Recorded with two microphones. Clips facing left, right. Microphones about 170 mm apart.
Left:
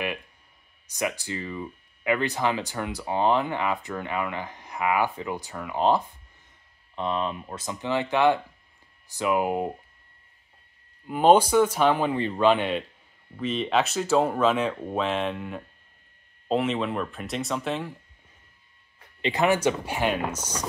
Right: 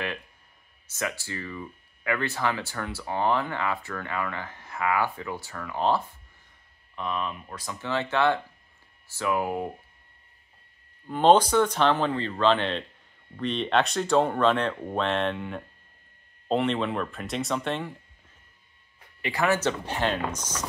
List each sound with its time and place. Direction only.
0.8 s speech: 15° left (ahead or behind)
7.0 s speech: 25° left (ahead or behind)
11.1 s speech: 10° left (ahead or behind)
19.2 s speech: 20° left (ahead or behind)